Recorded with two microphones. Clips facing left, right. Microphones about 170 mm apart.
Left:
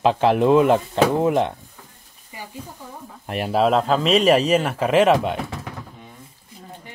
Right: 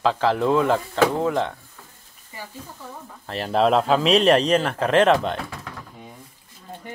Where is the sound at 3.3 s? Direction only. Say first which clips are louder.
Left 3 dB; 15° left (ahead or behind).